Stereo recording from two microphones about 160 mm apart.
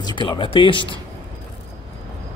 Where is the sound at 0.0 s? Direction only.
30° left (ahead or behind).